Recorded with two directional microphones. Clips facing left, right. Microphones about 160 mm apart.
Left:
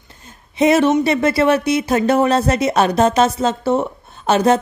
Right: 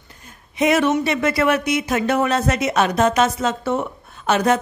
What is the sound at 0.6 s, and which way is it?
Speech, 30° left (ahead or behind).